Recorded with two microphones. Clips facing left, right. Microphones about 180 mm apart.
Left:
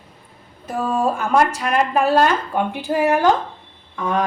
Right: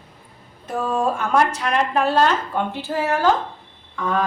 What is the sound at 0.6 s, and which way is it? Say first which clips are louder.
A woman's voice: left 1 dB; 5° left (ahead or behind).